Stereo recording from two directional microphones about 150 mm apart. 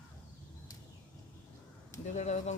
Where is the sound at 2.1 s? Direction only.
50° left (ahead or behind).